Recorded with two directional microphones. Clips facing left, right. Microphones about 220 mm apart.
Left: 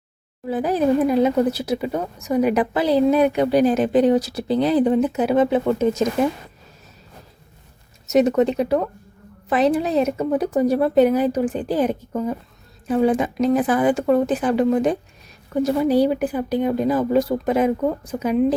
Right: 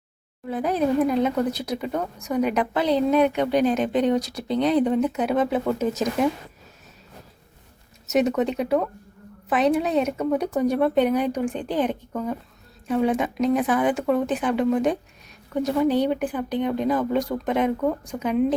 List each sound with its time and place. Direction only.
0.4 s speech: 5° left (ahead or behind)
8.0 s speech: centre (ahead or behind)